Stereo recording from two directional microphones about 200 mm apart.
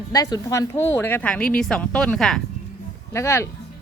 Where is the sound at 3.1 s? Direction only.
15° left (ahead or behind).